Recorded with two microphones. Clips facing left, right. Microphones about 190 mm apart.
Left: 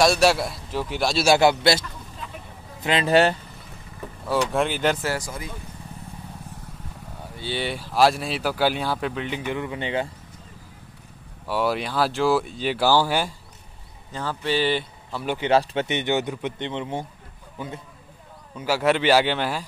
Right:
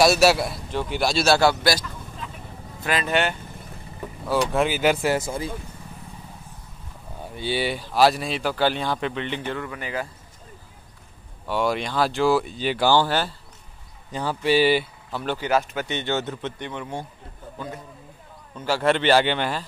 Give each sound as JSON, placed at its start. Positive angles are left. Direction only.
{"t": 0.0, "sound": "speech", "side_deg": -5}
{"t": 1.2, "sound": "speech", "side_deg": 20}
{"t": 4.3, "sound": "speech", "side_deg": 0}
{"t": 5.1, "sound": "speech", "side_deg": -25}
{"t": 7.3, "sound": "speech", "side_deg": -10}
{"t": 11.4, "sound": "speech", "side_deg": 5}
{"t": 14.1, "sound": "speech", "side_deg": -15}
{"t": 15.2, "sound": "a man's voice", "side_deg": 20}